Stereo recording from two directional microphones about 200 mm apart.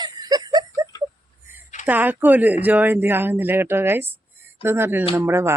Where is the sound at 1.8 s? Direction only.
10° right (ahead or behind).